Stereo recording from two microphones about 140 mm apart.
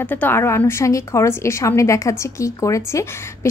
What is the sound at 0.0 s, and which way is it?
A woman's voice, 15° left (ahead or behind).